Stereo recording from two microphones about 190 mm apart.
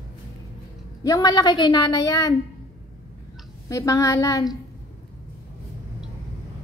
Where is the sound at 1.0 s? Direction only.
20° left (ahead or behind).